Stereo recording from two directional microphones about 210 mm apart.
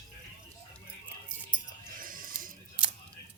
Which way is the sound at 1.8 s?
40° right (ahead or behind).